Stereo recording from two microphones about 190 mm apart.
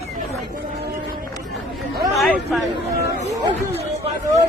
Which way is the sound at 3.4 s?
20° right (ahead or behind).